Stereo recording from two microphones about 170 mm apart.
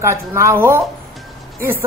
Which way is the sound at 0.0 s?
15° right (ahead or behind).